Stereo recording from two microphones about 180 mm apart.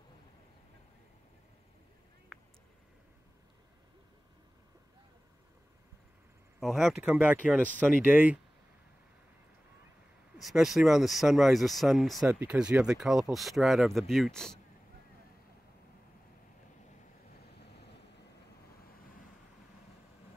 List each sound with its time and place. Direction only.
2.3 s a sound: centre (ahead or behind)
6.6 s speech: centre (ahead or behind)
10.3 s speech: centre (ahead or behind)